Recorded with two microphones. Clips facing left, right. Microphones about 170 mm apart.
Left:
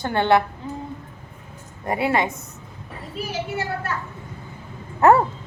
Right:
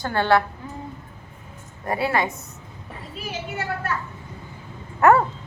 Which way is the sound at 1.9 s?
20° left (ahead or behind).